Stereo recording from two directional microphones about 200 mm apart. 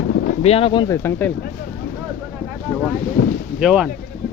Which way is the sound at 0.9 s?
10° left (ahead or behind).